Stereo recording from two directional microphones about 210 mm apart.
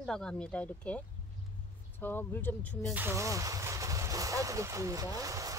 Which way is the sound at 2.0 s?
10° left (ahead or behind).